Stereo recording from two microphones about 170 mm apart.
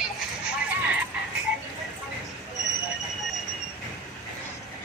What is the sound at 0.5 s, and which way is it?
Music, 5° right (ahead or behind).